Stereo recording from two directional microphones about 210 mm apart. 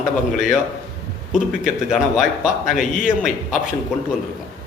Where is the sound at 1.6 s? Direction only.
Centre (ahead or behind).